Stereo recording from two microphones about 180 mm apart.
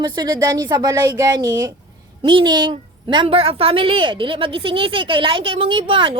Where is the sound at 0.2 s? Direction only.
20° right (ahead or behind).